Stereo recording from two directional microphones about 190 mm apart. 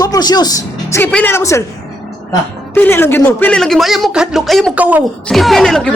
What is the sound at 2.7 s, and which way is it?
Speech, 10° left (ahead or behind).